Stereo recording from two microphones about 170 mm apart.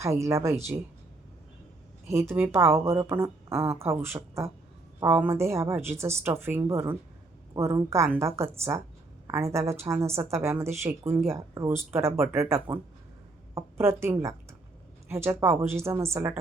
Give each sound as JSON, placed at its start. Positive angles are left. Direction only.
{"t": 0.0, "sound": "a woman's voice", "side_deg": -15}
{"t": 2.0, "sound": "a woman's voice", "side_deg": -15}